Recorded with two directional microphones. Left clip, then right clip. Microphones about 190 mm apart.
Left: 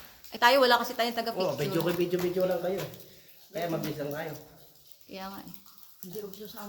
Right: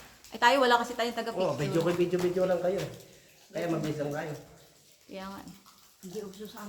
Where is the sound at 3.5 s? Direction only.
5° left (ahead or behind).